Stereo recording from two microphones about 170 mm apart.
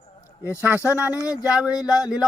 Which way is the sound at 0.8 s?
15° left (ahead or behind).